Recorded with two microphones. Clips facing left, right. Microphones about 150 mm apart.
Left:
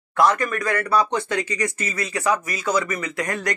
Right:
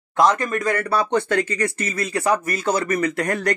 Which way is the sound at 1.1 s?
55° right (ahead or behind).